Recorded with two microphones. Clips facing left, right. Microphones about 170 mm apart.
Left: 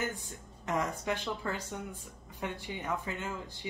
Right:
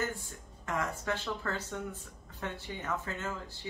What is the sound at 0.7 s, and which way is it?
Speech, 15° left (ahead or behind).